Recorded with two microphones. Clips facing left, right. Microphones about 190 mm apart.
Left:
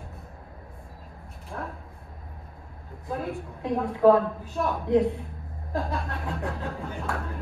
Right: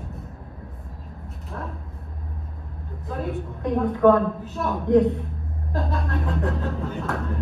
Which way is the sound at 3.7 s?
Centre (ahead or behind).